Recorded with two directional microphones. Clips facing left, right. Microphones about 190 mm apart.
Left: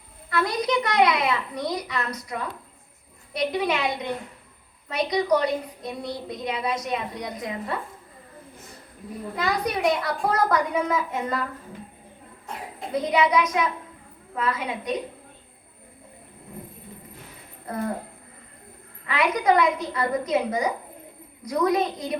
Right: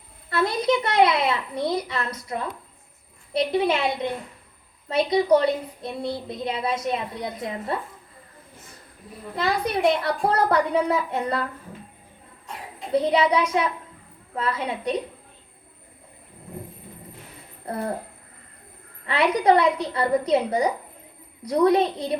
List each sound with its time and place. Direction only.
0.3 s a child's voice: 30° right (ahead or behind)
9.3 s a woman's voice: 30° right (ahead or behind)
12.9 s a woman's voice: 30° right (ahead or behind)
17.7 s speech: 30° right (ahead or behind)
19.0 s a woman's voice: 30° right (ahead or behind)